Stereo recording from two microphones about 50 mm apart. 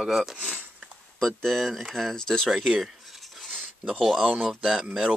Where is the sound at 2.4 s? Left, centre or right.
Centre.